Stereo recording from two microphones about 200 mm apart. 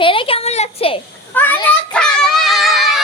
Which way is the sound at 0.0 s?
25° left (ahead or behind).